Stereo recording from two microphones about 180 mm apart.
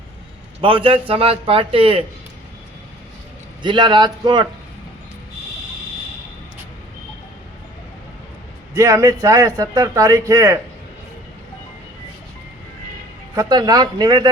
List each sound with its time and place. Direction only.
0.6 s a man's voice: 30° right (ahead or behind)
3.6 s speech: 25° right (ahead or behind)
8.7 s a man's voice: 15° right (ahead or behind)
13.3 s speech: 20° right (ahead or behind)